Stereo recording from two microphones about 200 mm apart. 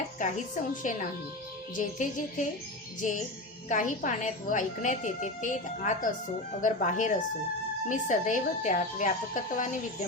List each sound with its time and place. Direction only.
0.2 s a woman's voice: 40° left (ahead or behind)